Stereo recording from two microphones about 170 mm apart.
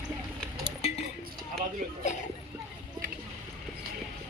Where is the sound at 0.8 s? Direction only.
40° left (ahead or behind).